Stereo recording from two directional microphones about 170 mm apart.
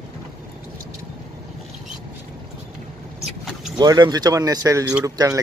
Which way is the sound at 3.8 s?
25° right (ahead or behind).